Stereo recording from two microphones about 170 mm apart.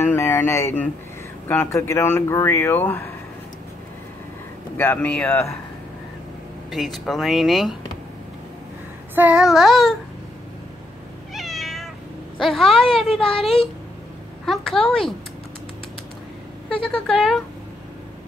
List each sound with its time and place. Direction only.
0.0 s a sound: 15° left (ahead or behind)
1.5 s speech: 15° left (ahead or behind)
4.7 s speech: 10° left (ahead or behind)
6.7 s speech: centre (ahead or behind)
9.1 s speech: 10° right (ahead or behind)
11.3 s cat: centre (ahead or behind)
12.4 s speech: centre (ahead or behind)
16.6 s speech: 5° left (ahead or behind)